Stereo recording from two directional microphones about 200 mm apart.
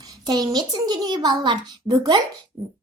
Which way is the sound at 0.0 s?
20° right (ahead or behind).